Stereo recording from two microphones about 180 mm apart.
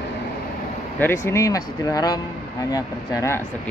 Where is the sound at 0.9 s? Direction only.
15° left (ahead or behind).